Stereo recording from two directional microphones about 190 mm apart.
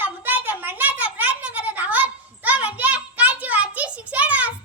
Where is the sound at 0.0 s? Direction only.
10° right (ahead or behind).